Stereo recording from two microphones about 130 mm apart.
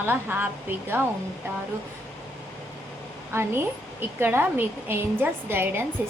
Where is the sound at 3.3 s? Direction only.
20° right (ahead or behind).